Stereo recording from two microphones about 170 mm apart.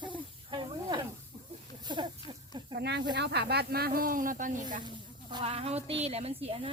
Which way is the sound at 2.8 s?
80° right.